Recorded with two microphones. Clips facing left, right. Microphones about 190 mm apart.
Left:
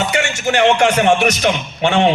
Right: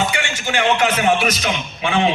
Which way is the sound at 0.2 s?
45° left (ahead or behind).